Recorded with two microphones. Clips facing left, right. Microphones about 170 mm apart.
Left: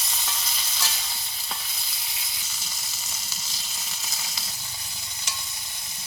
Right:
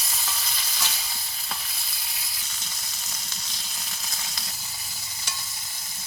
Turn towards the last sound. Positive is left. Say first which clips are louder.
# even
turn(degrees=0)  # may be behind; listen again after turning